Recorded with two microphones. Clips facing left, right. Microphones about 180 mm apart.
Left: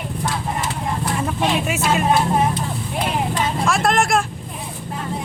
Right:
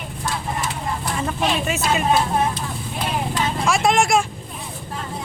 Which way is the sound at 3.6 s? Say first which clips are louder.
Right 1 dB; centre (ahead or behind).